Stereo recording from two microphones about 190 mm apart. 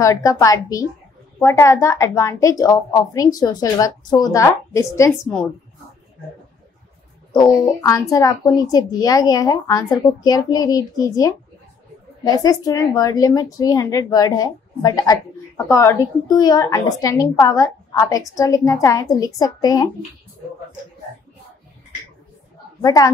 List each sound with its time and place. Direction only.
0.0 s a woman's voice: 15° left (ahead or behind)
7.3 s speech: 20° left (ahead or behind)
12.3 s speech: 20° left (ahead or behind)
22.8 s speech: 20° left (ahead or behind)